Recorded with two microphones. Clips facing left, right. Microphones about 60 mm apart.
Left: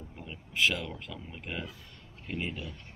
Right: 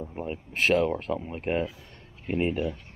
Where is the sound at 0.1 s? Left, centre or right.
Right.